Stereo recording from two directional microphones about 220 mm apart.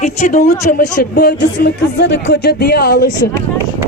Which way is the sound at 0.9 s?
45° left (ahead or behind).